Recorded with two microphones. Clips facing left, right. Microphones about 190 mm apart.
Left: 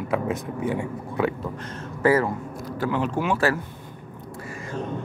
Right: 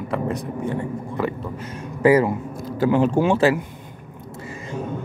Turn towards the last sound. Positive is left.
turn(degrees=-20)  # may be behind; listen again after turning